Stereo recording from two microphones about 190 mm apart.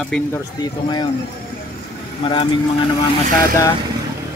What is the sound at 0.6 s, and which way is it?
Speech, 20° left (ahead or behind).